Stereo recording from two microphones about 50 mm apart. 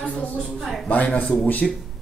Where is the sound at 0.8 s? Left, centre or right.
Left.